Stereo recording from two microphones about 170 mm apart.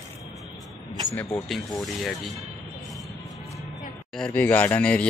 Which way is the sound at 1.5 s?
Centre (ahead or behind).